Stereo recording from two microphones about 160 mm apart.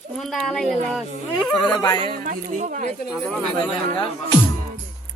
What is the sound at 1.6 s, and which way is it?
Speech, 25° left (ahead or behind).